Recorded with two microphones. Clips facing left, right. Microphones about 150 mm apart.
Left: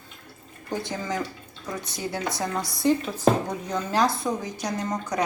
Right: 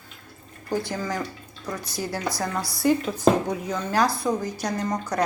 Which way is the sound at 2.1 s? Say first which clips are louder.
Left 1 dB; 25° left (ahead or behind).